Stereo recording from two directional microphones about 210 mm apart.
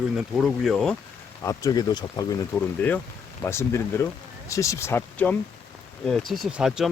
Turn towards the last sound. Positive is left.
turn(degrees=-5)  # may be behind; listen again after turning